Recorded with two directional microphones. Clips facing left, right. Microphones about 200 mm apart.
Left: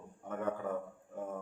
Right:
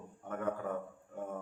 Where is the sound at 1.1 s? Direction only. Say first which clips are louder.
Even; centre (ahead or behind).